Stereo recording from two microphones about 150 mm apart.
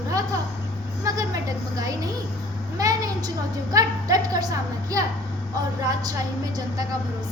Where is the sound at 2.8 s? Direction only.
25° right (ahead or behind).